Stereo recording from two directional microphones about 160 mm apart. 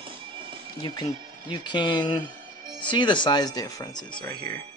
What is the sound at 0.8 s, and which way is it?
Speech, 30° left (ahead or behind).